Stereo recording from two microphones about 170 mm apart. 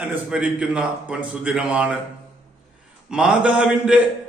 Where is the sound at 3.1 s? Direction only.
5° right (ahead or behind).